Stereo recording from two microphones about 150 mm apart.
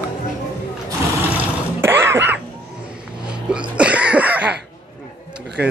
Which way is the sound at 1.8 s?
15° right (ahead or behind).